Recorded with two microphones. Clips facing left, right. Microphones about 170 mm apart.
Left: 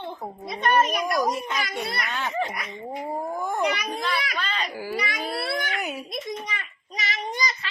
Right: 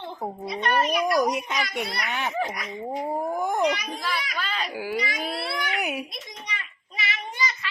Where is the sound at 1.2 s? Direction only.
20° right (ahead or behind).